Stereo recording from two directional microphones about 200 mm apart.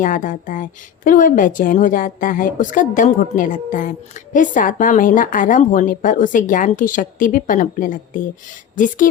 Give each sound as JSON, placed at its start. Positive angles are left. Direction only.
{"t": 0.0, "sound": "a woman's voice", "side_deg": 40}